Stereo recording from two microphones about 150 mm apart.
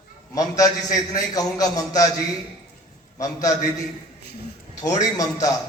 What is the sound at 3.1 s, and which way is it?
Speech, 20° left (ahead or behind).